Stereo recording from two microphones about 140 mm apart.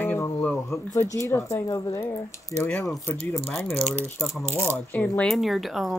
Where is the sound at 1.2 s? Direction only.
20° left (ahead or behind).